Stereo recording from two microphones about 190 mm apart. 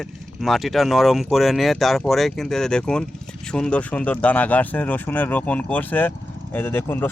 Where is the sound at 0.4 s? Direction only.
Centre (ahead or behind).